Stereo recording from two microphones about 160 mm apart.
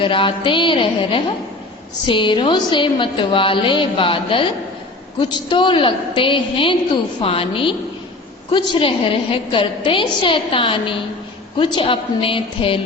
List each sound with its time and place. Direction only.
0.0 s a woman's voice: 30° left (ahead or behind)